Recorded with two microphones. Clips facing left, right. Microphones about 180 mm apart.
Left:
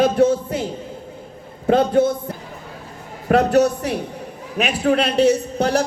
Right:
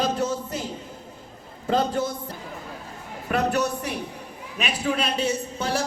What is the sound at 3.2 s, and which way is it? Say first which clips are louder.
A man's voice: left 9 dB; 65° left (ahead or behind).